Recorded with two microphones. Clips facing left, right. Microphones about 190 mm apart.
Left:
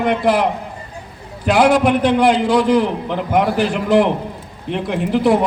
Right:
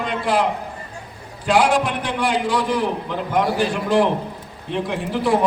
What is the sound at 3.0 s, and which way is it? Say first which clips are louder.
A man's voice: left 4 dB; 65° left (ahead or behind).